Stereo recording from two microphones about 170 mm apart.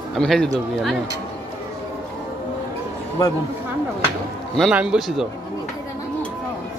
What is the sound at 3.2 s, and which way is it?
Speech, 20° left (ahead or behind).